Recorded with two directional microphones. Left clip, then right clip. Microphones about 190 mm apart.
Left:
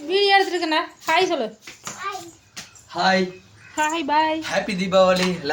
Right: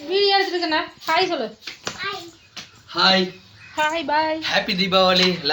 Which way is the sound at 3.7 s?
10° left (ahead or behind).